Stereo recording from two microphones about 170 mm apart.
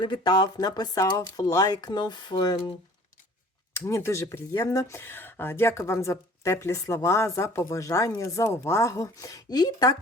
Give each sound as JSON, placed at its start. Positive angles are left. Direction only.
{"t": 0.0, "sound": "speech", "side_deg": 25}
{"t": 3.8, "sound": "speech", "side_deg": 15}